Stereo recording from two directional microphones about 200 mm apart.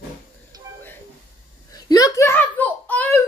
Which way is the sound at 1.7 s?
20° left (ahead or behind).